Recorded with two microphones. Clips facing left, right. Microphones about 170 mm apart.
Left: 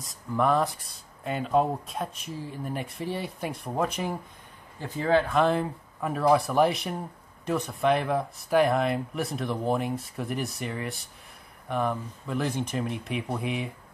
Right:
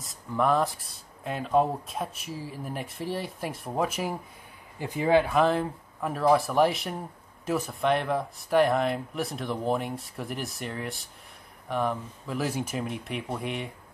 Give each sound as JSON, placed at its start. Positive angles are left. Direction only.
{"t": 0.0, "sound": "speech", "side_deg": 0}